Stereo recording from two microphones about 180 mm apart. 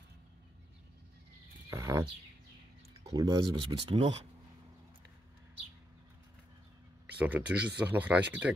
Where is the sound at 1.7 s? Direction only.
15° right (ahead or behind).